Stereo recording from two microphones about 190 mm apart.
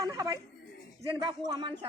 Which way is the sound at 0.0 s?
20° right (ahead or behind).